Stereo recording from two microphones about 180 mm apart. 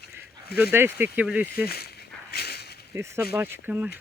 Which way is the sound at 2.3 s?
60° left (ahead or behind).